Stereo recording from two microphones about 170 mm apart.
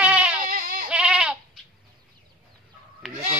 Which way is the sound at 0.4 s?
55° right (ahead or behind).